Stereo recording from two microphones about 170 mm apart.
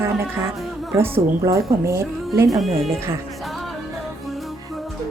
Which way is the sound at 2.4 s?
Centre (ahead or behind).